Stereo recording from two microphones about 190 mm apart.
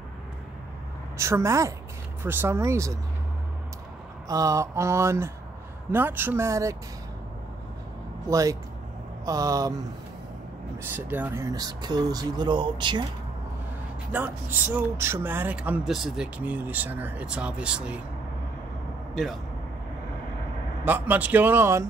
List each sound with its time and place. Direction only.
1.1 s speech: 15° right (ahead or behind)
4.3 s speech: 15° right (ahead or behind)
8.3 s speech: 15° right (ahead or behind)
10.8 s speech: 10° right (ahead or behind)
14.1 s speech: 10° right (ahead or behind)
20.8 s speech: 10° right (ahead or behind)